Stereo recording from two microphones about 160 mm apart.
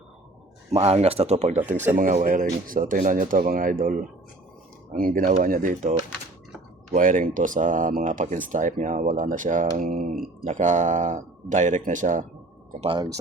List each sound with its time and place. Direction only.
0.7 s speech: 40° right (ahead or behind); by 5.9 s 55° right (ahead or behind)
6.9 s speech: 55° right (ahead or behind)
10.4 s speech: 50° right (ahead or behind)
12.8 s speech: 30° right (ahead or behind)